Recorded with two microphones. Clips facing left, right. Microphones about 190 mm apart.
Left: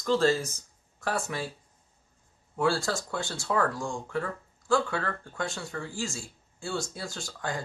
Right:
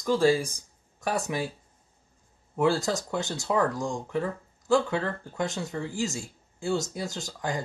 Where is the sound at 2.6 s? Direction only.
20° right (ahead or behind).